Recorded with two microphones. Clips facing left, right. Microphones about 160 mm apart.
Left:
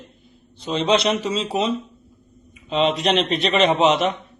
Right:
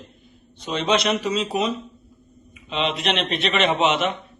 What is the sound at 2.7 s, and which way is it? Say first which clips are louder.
A man's voice: left 5 dB; 40° left (ahead or behind).